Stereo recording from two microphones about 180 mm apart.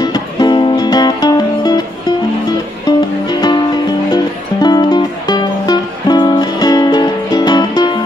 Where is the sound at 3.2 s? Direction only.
25° left (ahead or behind).